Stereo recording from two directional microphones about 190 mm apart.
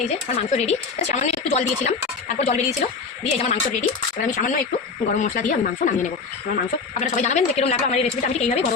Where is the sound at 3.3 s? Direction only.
35° left (ahead or behind).